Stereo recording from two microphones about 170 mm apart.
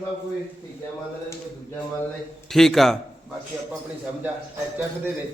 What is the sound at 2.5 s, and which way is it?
Speech, centre (ahead or behind).